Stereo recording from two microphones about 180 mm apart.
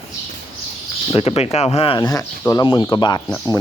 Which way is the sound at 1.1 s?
35° left (ahead or behind).